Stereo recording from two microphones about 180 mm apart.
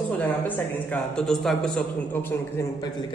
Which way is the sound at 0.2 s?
10° left (ahead or behind).